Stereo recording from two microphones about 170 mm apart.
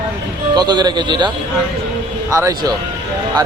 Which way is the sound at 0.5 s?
25° right (ahead or behind).